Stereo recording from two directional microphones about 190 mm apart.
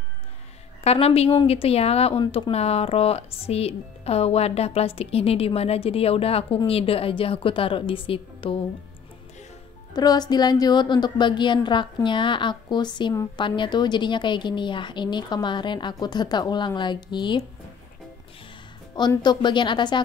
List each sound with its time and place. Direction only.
0.8 s a woman's voice: 30° left (ahead or behind)
9.9 s a woman's voice: 20° left (ahead or behind)
18.9 s a woman's voice: 20° left (ahead or behind)